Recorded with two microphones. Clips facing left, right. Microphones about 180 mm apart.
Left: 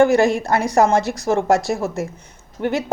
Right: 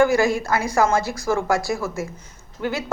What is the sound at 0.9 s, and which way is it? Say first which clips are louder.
Speech: left 3 dB; 65° left (ahead or behind).